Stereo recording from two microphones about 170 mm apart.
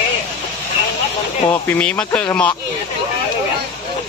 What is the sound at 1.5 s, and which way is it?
Speech, 10° left (ahead or behind).